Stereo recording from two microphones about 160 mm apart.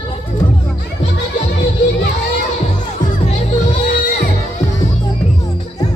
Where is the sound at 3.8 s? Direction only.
70° left (ahead or behind).